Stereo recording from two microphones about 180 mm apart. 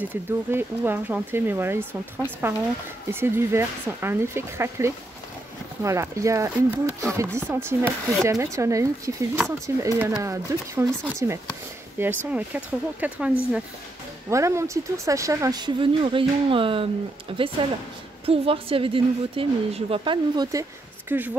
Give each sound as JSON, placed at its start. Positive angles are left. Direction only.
{"t": 0.0, "sound": "a woman's voice", "side_deg": -10}
{"t": 21.1, "sound": "speech", "side_deg": -10}